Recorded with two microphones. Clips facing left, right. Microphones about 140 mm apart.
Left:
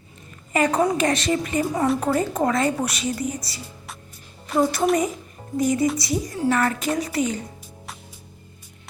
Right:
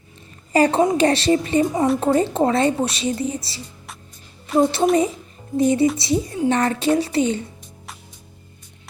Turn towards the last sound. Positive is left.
turn(degrees=0)  # may be behind; listen again after turning